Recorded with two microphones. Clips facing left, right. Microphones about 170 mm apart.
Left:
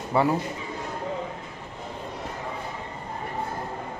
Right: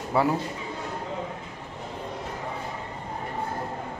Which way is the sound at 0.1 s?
Centre (ahead or behind).